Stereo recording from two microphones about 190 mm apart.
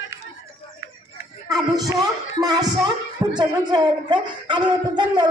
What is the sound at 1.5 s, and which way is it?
Music, 20° right (ahead or behind).